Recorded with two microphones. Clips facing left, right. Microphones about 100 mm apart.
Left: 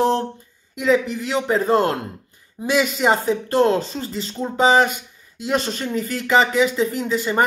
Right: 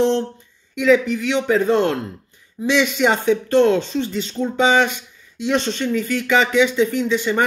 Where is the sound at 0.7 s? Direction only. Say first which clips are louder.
Right 3 dB; 35° left (ahead or behind).